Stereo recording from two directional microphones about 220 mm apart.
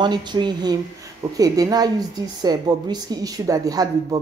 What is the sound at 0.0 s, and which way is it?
A woman's voice, 20° right (ahead or behind).